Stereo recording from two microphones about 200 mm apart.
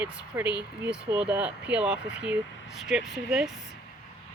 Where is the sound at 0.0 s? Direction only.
5° right (ahead or behind).